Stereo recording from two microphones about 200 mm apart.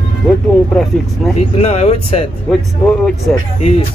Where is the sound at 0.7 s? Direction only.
Centre (ahead or behind).